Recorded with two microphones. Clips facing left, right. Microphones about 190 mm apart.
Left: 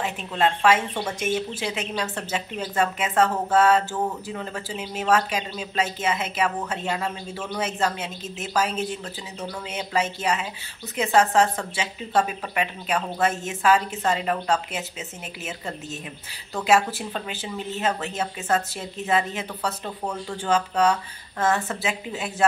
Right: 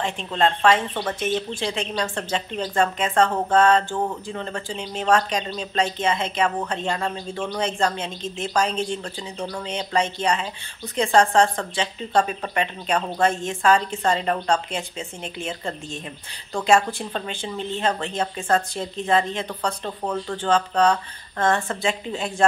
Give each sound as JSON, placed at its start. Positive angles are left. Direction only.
{"t": 0.0, "sound": "speech", "side_deg": 5}